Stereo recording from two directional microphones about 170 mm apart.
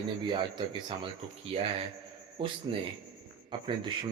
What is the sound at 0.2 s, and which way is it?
Speech, 25° right (ahead or behind).